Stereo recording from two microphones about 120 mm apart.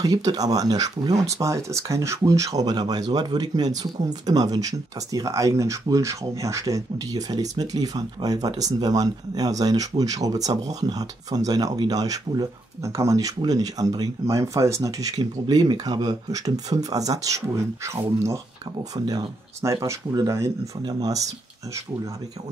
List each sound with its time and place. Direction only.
0.0 s speech: 30° right (ahead or behind)